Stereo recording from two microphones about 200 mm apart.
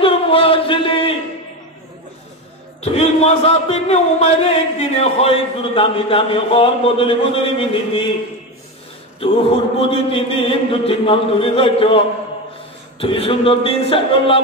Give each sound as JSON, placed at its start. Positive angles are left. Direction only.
{"t": 0.0, "sound": "a sound", "side_deg": 25}
{"t": 2.8, "sound": "speech", "side_deg": 30}
{"t": 9.8, "sound": "speech", "side_deg": 25}
{"t": 13.0, "sound": "speech", "side_deg": 25}